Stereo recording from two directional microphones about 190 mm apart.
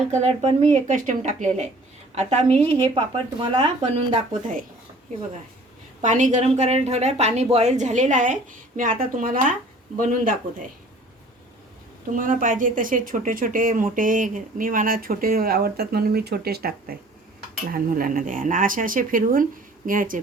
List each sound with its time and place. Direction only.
0.1 s speech: 35° right (ahead or behind)
6.0 s speech: 40° right (ahead or behind)
12.1 s speech: 45° right (ahead or behind)